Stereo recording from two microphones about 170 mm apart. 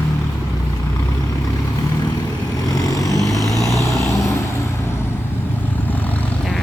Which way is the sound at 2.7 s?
20° left (ahead or behind).